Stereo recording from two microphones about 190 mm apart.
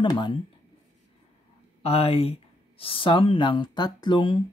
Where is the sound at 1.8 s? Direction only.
30° left (ahead or behind).